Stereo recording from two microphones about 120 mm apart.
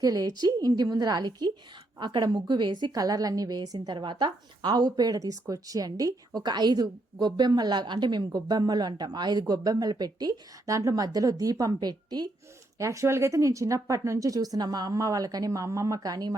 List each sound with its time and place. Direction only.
0.0 s a woman's voice: 30° right (ahead or behind)